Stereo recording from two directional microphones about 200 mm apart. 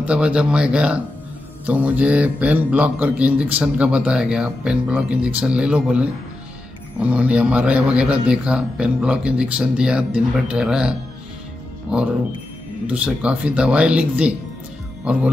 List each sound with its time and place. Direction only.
0.0 s a man's voice: 5° right (ahead or behind)